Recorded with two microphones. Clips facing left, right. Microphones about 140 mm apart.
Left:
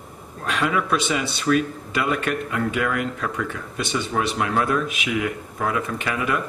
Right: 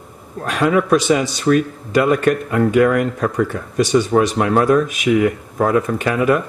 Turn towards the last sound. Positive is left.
turn(degrees=-45)  # may be behind; listen again after turning